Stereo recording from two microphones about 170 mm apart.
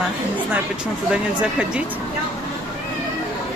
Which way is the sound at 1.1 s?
5° right (ahead or behind).